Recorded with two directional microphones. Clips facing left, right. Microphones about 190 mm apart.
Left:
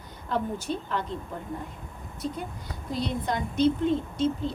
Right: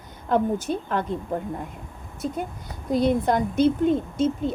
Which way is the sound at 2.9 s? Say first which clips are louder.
Right 9 dB; 50° right (ahead or behind).